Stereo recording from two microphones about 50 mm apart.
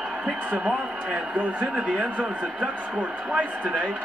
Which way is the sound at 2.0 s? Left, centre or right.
Left.